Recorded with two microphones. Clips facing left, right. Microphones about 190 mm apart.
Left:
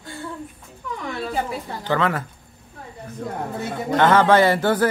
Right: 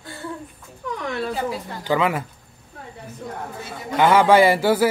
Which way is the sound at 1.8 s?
10° right (ahead or behind).